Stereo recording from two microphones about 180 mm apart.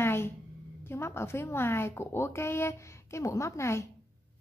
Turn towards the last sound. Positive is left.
turn(degrees=15)  # may be behind; listen again after turning